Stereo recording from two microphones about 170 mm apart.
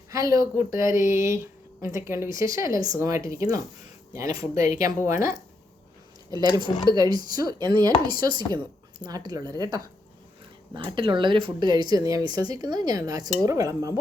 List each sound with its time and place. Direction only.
0.1 s speech: 20° right (ahead or behind)
6.3 s speech: 25° right (ahead or behind)
10.8 s speech: 30° right (ahead or behind)